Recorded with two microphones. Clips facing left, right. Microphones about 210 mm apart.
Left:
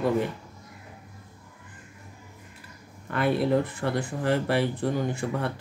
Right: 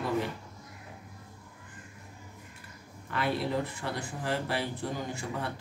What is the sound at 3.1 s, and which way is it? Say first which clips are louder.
Speech: left 7 dB; 55° left (ahead or behind).